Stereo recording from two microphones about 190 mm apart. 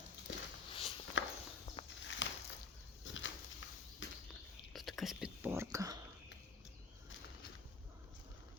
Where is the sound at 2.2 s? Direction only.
75° left (ahead or behind).